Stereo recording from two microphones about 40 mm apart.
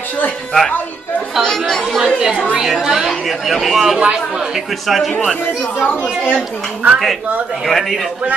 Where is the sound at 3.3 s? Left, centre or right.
Centre.